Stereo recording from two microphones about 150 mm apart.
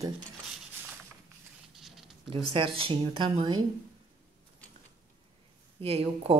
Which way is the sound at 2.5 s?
35° right (ahead or behind).